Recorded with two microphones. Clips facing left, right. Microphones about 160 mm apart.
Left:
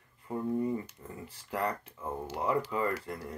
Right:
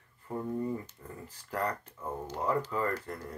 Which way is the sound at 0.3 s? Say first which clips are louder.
Left 2 dB; 5° left (ahead or behind).